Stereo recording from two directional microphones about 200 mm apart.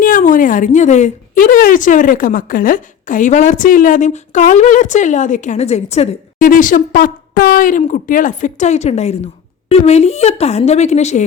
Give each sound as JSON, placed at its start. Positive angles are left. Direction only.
{"t": 0.0, "sound": "a woman's voice", "side_deg": 40}